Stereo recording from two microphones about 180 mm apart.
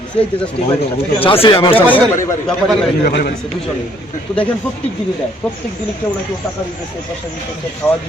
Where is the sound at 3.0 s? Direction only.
65° left (ahead or behind).